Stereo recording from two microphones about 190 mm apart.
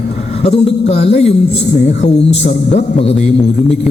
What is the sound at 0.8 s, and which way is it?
Speech, 35° left (ahead or behind).